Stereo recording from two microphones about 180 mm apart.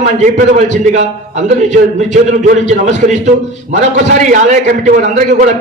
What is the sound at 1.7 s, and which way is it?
A man's voice, 40° right (ahead or behind).